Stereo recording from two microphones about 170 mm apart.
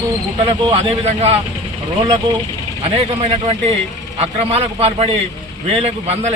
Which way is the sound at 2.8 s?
35° right (ahead or behind).